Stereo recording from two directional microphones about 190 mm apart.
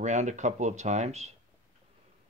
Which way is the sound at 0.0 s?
40° right (ahead or behind).